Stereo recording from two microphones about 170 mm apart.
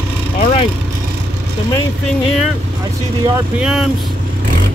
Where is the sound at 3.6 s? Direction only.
5° right (ahead or behind).